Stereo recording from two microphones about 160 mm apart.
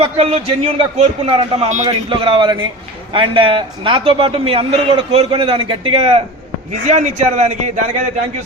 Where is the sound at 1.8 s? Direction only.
35° right (ahead or behind).